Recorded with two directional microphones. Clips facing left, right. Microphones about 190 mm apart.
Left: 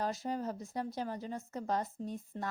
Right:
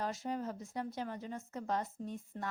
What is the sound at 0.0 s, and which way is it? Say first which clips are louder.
Speech: left 2 dB; 35° left (ahead or behind).